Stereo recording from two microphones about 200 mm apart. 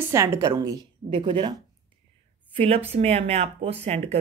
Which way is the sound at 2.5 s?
30° right (ahead or behind).